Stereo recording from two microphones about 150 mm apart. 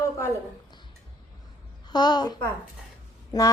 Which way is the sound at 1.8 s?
30° left (ahead or behind).